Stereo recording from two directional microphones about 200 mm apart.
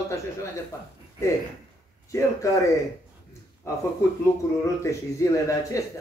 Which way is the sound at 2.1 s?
15° left (ahead or behind).